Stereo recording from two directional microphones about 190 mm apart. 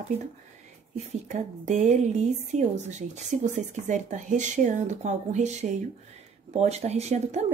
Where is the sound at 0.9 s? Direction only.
40° right (ahead or behind).